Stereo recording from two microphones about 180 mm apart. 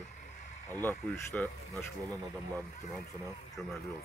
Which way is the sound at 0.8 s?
10° left (ahead or behind).